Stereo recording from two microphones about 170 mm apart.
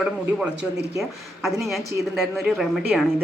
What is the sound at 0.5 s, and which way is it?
Speech, 75° right (ahead or behind).